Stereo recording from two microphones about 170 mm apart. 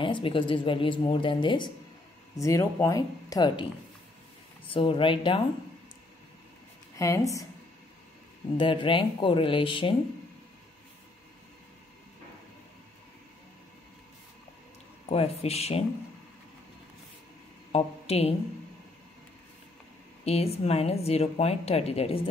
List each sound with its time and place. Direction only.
0.0 s a woman's voice: 30° left (ahead or behind)
4.6 s a woman's voice: 30° left (ahead or behind)
7.0 s a woman's voice: 20° left (ahead or behind)
8.5 s speech: 30° left (ahead or behind)
15.0 s speech: 35° left (ahead or behind)
17.7 s speech: 35° left (ahead or behind)
20.2 s speech: 35° left (ahead or behind)